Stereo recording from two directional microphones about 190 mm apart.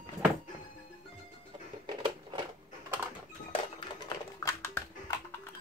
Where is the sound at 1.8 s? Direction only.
25° right (ahead or behind).